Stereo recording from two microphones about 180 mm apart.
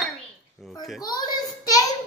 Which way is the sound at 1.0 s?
20° left (ahead or behind).